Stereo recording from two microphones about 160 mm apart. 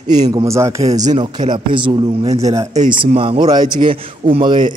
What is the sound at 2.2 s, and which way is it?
Speech, 45° right (ahead or behind).